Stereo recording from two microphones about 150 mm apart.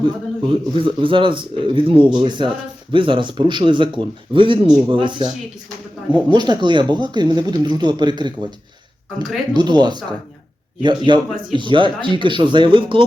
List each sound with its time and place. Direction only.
0.0 s speech: 35° right (ahead or behind)
6.3 s speech: 30° right (ahead or behind)